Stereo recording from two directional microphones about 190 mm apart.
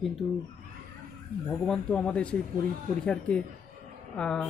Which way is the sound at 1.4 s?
5° left (ahead or behind).